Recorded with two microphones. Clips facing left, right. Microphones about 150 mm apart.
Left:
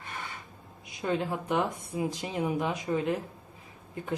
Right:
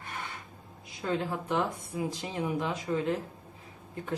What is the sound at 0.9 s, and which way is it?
Speech, 15° left (ahead or behind).